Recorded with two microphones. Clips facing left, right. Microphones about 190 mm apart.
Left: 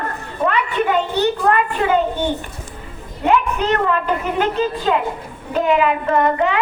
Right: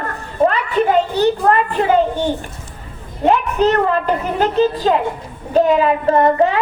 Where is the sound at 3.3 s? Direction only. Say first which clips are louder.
Right 3 dB; 35° right (ahead or behind).